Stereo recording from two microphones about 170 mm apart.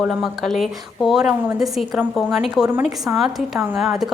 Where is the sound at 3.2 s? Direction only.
Centre (ahead or behind).